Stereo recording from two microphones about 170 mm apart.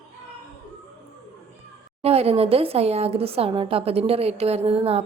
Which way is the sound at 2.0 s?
35° right (ahead or behind).